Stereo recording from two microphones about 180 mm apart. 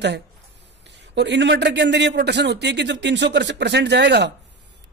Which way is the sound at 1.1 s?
75° right (ahead or behind).